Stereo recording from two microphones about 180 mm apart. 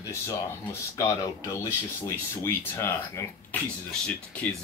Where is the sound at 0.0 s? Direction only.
15° left (ahead or behind).